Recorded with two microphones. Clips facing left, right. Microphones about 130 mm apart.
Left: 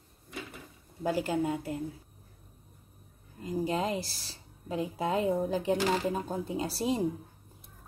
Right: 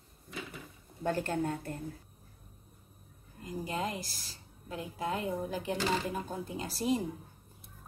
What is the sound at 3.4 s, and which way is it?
Speech, 25° left (ahead or behind).